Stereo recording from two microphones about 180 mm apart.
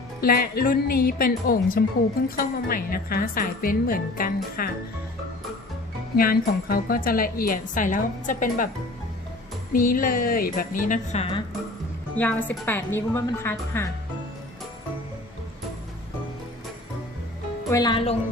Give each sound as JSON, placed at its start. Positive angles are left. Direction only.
{"t": 0.2, "sound": "a woman's voice", "side_deg": 55}
{"t": 6.1, "sound": "a woman's voice", "side_deg": 55}
{"t": 9.7, "sound": "a woman's voice", "side_deg": 50}
{"t": 12.1, "sound": "a woman's voice", "side_deg": 10}
{"t": 17.7, "sound": "a woman's voice", "side_deg": 20}